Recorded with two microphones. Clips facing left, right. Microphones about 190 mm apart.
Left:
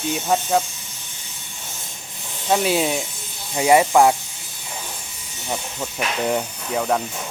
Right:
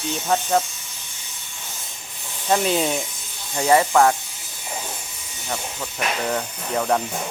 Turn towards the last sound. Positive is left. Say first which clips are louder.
# even
turn(degrees=5)  # may be behind; listen again after turning